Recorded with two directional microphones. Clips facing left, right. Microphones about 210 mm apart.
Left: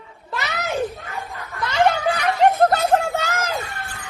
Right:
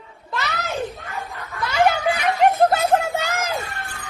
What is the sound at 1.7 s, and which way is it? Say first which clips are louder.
Snicker: even; 10° right (ahead or behind).